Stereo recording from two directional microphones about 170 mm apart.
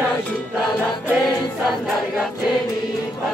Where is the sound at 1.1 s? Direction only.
Centre (ahead or behind).